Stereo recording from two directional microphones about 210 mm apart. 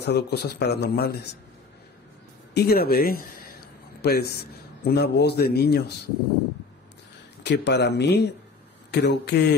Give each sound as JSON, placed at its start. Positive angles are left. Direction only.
{"t": 0.0, "sound": "speech", "side_deg": 50}
{"t": 2.5, "sound": "speech", "side_deg": 50}
{"t": 7.4, "sound": "speech", "side_deg": 55}